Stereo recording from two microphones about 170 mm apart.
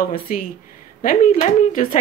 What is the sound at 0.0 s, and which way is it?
Speech, 55° left (ahead or behind).